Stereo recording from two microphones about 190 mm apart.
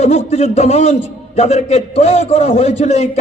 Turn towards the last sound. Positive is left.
turn(degrees=35)  # may be behind; listen again after turning